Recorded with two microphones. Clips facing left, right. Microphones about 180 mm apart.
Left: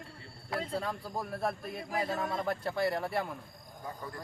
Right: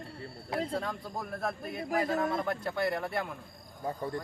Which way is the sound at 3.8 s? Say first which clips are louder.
Right 8 dB; 30° right (ahead or behind).